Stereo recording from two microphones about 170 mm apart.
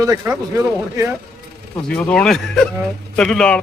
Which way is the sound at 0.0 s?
20° right (ahead or behind).